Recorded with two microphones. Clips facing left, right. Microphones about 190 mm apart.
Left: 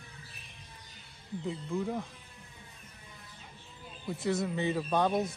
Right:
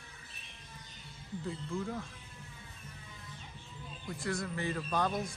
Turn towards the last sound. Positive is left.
turn(degrees=20)  # may be behind; listen again after turning